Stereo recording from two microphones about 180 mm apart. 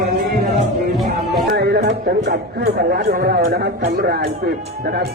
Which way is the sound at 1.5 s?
65° right (ahead or behind).